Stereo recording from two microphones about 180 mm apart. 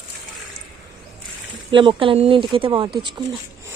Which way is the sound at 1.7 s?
30° right (ahead or behind).